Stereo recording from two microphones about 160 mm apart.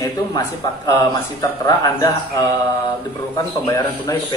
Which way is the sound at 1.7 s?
25° left (ahead or behind).